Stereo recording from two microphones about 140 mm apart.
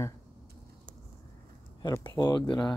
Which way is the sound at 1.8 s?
30° left (ahead or behind).